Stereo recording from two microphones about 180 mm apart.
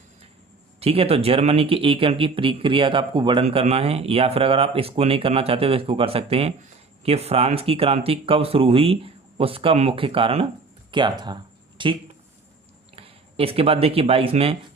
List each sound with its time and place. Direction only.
0.8 s speech: 35° right (ahead or behind)
13.0 s speech: 30° right (ahead or behind)